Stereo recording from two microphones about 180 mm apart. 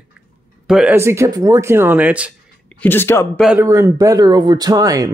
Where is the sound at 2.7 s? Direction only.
10° left (ahead or behind).